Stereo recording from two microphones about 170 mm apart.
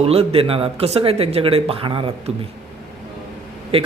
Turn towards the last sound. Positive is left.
turn(degrees=-35)  # may be behind; listen again after turning